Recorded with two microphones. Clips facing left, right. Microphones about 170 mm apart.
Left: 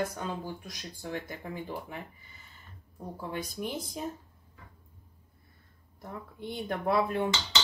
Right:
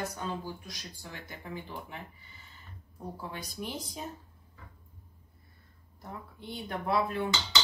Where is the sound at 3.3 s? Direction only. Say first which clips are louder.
Left 7 dB; 50° left (ahead or behind).